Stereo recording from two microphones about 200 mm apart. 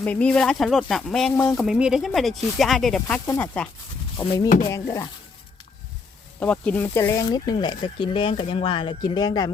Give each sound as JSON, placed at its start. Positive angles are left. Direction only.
{"t": 0.0, "sound": "speech", "side_deg": 10}
{"t": 6.4, "sound": "speech", "side_deg": 5}